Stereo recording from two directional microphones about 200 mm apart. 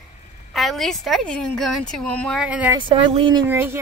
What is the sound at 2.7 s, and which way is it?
Speech, 25° right (ahead or behind).